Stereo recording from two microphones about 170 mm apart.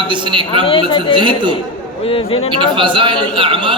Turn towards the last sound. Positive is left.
turn(degrees=-30)  # may be behind; listen again after turning